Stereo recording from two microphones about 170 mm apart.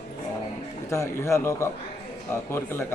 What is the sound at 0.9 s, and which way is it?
A man's voice, 15° left (ahead or behind).